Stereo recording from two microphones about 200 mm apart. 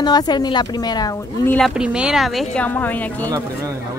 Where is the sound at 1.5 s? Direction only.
Centre (ahead or behind).